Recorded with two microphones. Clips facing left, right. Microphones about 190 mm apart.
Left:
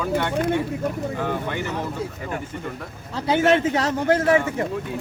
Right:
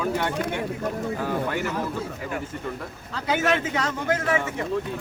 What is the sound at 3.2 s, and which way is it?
A man's voice, 35° left (ahead or behind).